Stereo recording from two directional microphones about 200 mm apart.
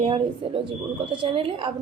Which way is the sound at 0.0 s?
25° right (ahead or behind).